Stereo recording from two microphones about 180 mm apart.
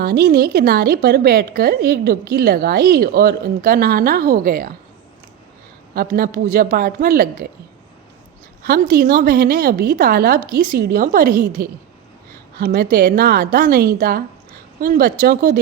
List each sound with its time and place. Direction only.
0.0 s a woman's voice: 55° right (ahead or behind)
5.9 s a woman's voice: 55° right (ahead or behind)
8.6 s a woman's voice: 55° right (ahead or behind)